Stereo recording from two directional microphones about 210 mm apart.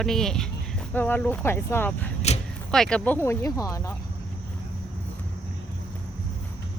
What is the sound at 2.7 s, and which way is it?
Speech, 5° left (ahead or behind).